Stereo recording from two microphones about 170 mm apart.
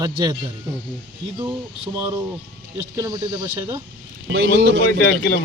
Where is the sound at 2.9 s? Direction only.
20° right (ahead or behind).